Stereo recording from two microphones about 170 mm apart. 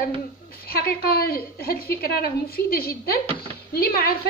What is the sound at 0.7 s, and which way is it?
A woman's voice, 65° left (ahead or behind).